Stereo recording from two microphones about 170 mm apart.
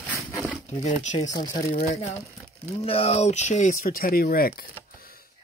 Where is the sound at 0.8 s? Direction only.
45° left (ahead or behind).